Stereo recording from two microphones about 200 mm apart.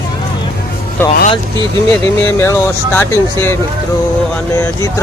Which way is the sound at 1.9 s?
10° left (ahead or behind).